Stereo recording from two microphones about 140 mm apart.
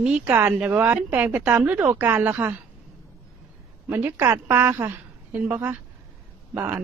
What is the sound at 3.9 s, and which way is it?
Speech, 15° right (ahead or behind).